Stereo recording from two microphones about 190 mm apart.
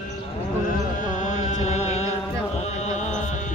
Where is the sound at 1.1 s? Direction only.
40° left (ahead or behind).